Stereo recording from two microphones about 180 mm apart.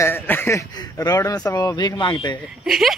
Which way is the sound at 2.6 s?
Centre (ahead or behind).